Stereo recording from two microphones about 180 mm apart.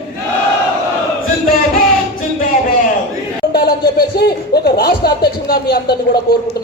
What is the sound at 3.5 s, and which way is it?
Speech, 60° left (ahead or behind).